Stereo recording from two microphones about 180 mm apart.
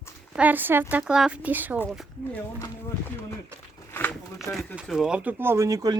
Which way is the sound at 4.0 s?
10° left (ahead or behind).